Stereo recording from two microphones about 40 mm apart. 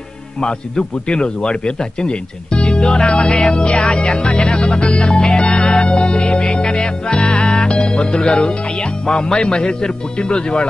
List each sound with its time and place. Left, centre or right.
0.4 s a man's voice: left